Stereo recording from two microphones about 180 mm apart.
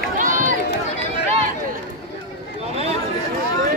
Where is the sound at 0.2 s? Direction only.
45° right (ahead or behind).